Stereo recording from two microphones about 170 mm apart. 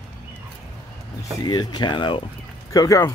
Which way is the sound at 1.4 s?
25° left (ahead or behind).